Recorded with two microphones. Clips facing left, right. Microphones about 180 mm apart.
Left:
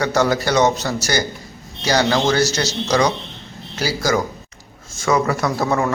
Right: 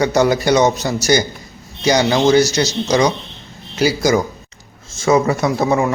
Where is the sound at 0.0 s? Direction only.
15° right (ahead or behind).